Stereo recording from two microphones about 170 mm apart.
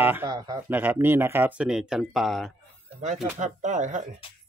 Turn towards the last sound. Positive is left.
turn(degrees=-50)  # may be behind; listen again after turning